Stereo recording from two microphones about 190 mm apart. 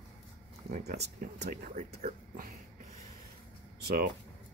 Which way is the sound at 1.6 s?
40° right (ahead or behind).